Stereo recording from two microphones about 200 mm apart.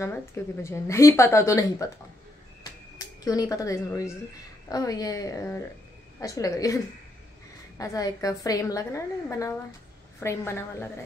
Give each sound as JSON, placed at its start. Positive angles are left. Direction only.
{"t": 0.0, "sound": "a woman's voice", "side_deg": 15}
{"t": 3.0, "sound": "a woman's voice", "side_deg": 20}